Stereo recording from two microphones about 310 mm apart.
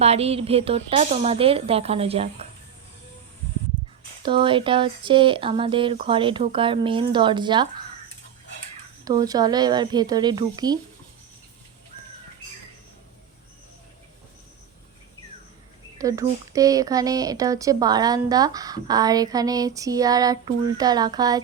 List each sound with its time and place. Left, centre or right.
0.0 s speech: centre
4.2 s speech: centre
9.0 s speech: centre
16.0 s speech: centre